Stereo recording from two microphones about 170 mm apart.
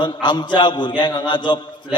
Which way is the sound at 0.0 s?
25° left (ahead or behind).